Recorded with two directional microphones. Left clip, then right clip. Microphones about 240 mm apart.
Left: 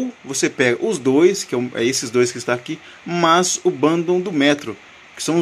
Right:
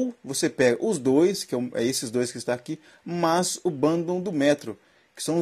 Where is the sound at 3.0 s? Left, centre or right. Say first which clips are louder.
Left 8 dB; centre.